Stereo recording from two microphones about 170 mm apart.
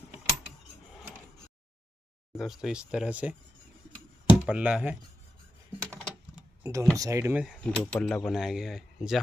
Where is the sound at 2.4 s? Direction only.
5° right (ahead or behind).